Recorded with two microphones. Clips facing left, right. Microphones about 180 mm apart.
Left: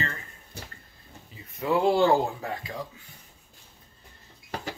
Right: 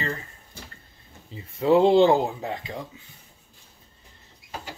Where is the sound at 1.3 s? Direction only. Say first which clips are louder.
Right 7 dB; 25° right (ahead or behind).